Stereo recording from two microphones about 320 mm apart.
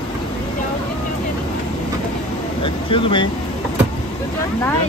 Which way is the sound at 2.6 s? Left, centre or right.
Centre.